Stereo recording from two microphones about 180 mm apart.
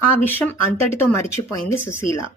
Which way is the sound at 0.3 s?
10° left (ahead or behind).